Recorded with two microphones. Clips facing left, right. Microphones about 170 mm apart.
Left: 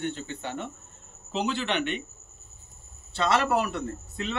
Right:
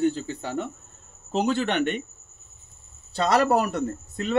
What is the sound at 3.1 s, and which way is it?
Speech, 40° right (ahead or behind).